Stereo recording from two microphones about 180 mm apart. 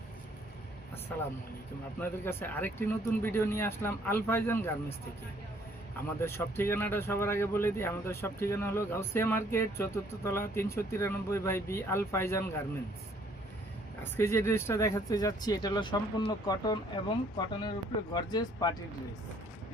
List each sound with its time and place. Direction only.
2.0 s speech: 10° left (ahead or behind)
6.2 s speech: 15° left (ahead or behind)
14.0 s speech: 15° left (ahead or behind)